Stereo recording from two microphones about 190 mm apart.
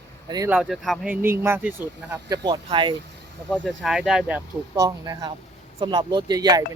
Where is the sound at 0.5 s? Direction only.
Centre (ahead or behind).